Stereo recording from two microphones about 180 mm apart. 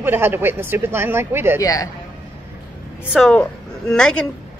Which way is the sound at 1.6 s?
20° left (ahead or behind).